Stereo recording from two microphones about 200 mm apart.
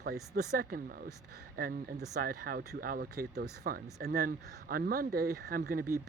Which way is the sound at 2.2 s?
45° right (ahead or behind).